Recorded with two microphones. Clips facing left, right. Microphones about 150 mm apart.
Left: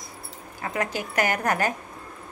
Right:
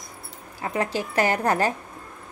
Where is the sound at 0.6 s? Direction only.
25° right (ahead or behind).